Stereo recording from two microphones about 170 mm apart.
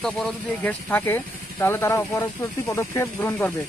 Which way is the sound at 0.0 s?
5° left (ahead or behind).